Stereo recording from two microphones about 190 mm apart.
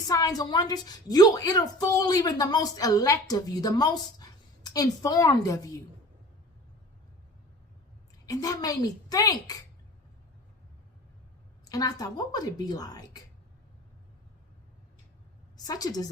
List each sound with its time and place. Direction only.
0.1 s a woman's voice: 20° left (ahead or behind)
8.3 s a woman's voice: 20° left (ahead or behind)
11.6 s a woman's voice: 20° left (ahead or behind)
15.5 s a woman's voice: 20° left (ahead or behind)